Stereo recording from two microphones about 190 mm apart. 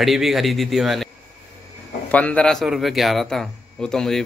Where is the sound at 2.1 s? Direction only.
5° left (ahead or behind).